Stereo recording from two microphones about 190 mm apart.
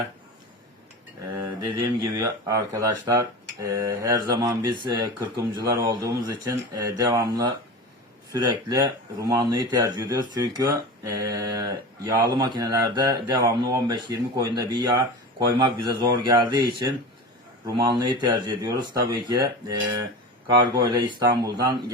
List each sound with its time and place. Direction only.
1.4 s speech: 20° right (ahead or behind)
17.7 s speech: 20° right (ahead or behind)